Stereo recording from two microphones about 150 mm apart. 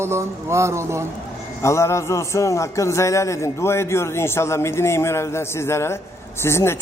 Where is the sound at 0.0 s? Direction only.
20° right (ahead or behind).